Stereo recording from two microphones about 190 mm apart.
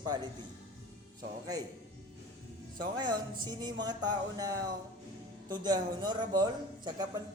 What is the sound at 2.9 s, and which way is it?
A man's voice, 20° right (ahead or behind).